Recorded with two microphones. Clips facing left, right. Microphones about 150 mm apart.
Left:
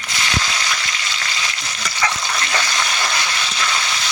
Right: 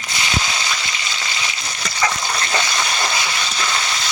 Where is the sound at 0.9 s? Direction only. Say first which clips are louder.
Even; 20° right (ahead or behind).